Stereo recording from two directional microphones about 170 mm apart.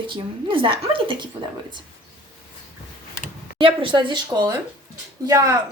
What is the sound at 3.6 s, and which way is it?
Speech, 30° right (ahead or behind).